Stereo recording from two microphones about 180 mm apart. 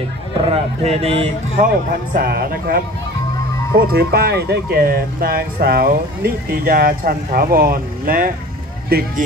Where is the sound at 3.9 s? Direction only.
60° right (ahead or behind).